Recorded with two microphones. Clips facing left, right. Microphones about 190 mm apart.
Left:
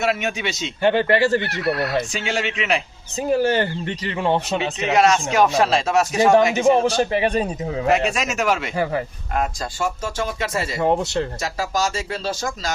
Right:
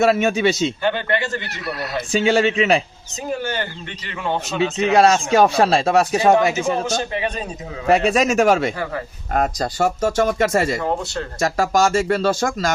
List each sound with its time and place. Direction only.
0.0 s speech: 35° right (ahead or behind)
0.8 s speech: 30° left (ahead or behind)
2.1 s speech: 35° right (ahead or behind)
3.3 s speech: 30° left (ahead or behind)
4.9 s speech: 35° right (ahead or behind)
6.5 s speech: 30° left (ahead or behind)
7.9 s speech: 35° right (ahead or behind)
10.8 s speech: 20° left (ahead or behind)
11.3 s speech: 50° right (ahead or behind)